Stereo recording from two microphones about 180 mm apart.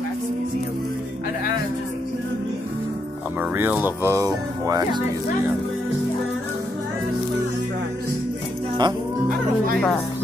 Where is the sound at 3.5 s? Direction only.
10° right (ahead or behind).